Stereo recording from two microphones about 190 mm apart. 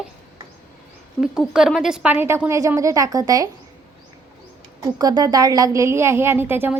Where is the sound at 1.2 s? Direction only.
5° right (ahead or behind); by 3.4 s 20° right (ahead or behind).